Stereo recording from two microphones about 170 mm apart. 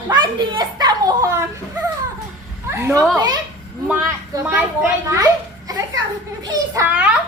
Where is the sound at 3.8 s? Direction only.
5° right (ahead or behind).